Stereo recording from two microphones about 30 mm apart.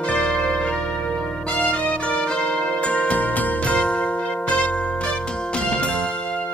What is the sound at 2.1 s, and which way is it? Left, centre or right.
Change ringing, left.